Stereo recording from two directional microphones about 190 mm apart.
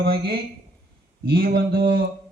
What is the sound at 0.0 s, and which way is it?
A man's voice, 55° right (ahead or behind).